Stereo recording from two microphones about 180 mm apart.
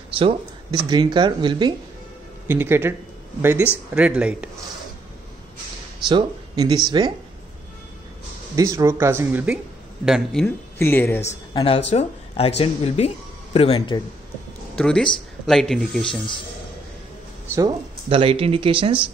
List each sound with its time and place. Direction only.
0.1 s a sound: 30° right (ahead or behind)
0.8 s speech: 25° right (ahead or behind)
2.4 s speech: 10° right (ahead or behind)
6.0 s speech: 25° right (ahead or behind)
8.5 s speech: 15° right (ahead or behind)
10.0 s speech: centre (ahead or behind)
10.8 s speech: 10° left (ahead or behind)
11.9 s speech: 35° left (ahead or behind)
14.8 s speech: 5° left (ahead or behind)
17.6 s speech: 25° right (ahead or behind)